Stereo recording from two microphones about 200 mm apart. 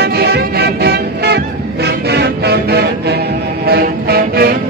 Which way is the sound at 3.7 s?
50° right (ahead or behind).